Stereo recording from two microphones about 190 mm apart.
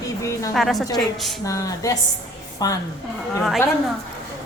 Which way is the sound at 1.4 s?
15° left (ahead or behind).